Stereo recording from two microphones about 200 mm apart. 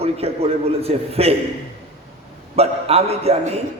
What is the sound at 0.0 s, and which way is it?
A man's voice, 30° right (ahead or behind).